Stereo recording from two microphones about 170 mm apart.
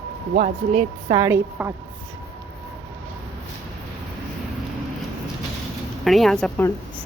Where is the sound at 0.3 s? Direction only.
45° right (ahead or behind).